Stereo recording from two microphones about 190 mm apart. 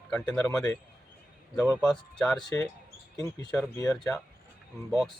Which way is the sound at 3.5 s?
10° left (ahead or behind).